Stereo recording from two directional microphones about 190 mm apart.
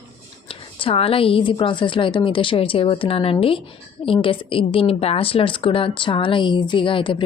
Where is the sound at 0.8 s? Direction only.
30° left (ahead or behind).